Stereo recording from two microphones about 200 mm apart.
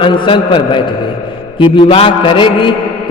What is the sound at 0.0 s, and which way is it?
A man's voice, 25° left (ahead or behind).